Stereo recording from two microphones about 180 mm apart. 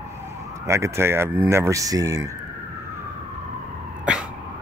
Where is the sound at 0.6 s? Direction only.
15° right (ahead or behind).